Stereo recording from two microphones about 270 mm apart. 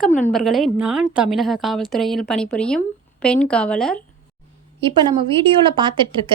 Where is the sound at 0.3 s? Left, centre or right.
Centre.